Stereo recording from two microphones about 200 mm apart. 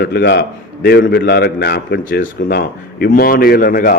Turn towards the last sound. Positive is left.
turn(degrees=50)  # may be behind; listen again after turning